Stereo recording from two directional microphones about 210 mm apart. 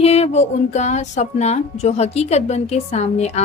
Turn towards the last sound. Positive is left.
turn(degrees=30)  # may be behind; listen again after turning